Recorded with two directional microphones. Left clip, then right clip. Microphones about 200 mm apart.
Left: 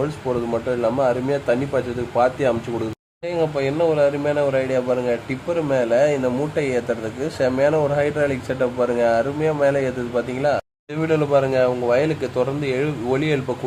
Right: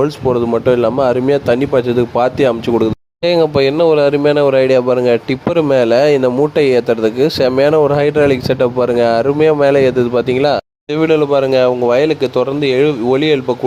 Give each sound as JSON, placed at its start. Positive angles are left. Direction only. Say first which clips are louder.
{"t": 0.0, "sound": "speech", "louder": "right 9 dB", "side_deg": -35}